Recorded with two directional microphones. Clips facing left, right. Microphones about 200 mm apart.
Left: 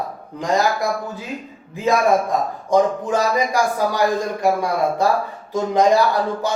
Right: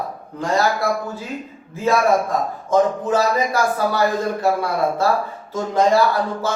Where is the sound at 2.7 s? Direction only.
15° left (ahead or behind).